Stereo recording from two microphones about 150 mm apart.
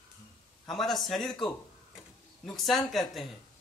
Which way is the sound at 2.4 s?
Centre (ahead or behind).